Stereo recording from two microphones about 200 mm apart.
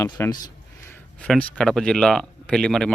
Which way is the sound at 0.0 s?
20° left (ahead or behind).